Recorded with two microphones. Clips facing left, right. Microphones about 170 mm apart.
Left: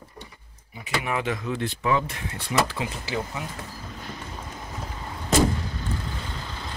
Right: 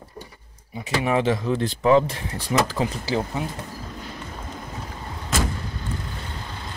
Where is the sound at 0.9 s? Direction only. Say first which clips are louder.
Right 6 dB; 30° right (ahead or behind).